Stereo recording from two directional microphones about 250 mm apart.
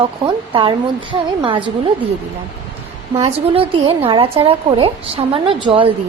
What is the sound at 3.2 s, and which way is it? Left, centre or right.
A woman's voice, right.